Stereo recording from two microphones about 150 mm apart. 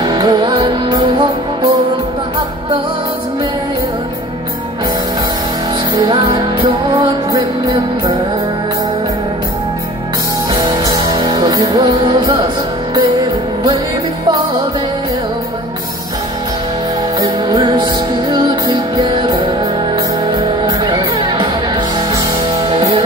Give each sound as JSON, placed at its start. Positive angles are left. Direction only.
{"t": 0.0, "sound": "music", "side_deg": -30}
{"t": 5.9, "sound": "music", "side_deg": -30}
{"t": 10.5, "sound": "music", "side_deg": -25}
{"t": 17.2, "sound": "music", "side_deg": -30}